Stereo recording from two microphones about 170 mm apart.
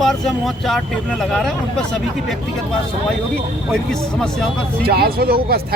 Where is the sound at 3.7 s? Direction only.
Centre (ahead or behind).